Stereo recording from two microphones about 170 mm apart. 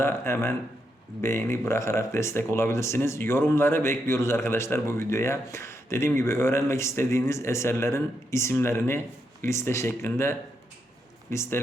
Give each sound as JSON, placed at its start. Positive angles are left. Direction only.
{"t": 0.0, "sound": "speech", "side_deg": 15}